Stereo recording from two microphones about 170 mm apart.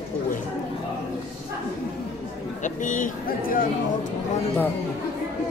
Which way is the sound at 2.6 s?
50° left (ahead or behind).